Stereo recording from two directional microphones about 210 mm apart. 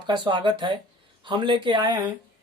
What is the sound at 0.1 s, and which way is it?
Speech, 20° right (ahead or behind).